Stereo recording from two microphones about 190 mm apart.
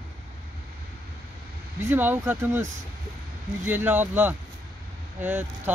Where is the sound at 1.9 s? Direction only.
10° right (ahead or behind).